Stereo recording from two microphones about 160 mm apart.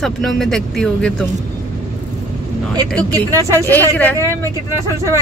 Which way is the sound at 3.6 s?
10° left (ahead or behind).